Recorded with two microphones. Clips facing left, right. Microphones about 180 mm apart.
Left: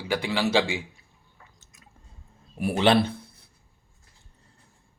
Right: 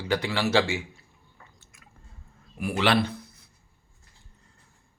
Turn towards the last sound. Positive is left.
turn(degrees=30)  # may be behind; listen again after turning